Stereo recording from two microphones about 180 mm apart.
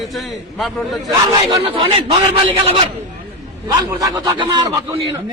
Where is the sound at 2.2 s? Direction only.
25° right (ahead or behind).